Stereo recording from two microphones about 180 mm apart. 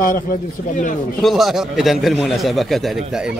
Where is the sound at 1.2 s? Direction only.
Centre (ahead or behind).